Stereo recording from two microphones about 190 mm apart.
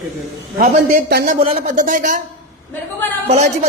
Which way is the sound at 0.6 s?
50° right (ahead or behind).